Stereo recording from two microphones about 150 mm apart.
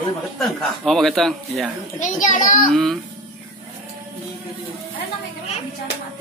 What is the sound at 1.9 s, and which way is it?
Speech, 55° left (ahead or behind).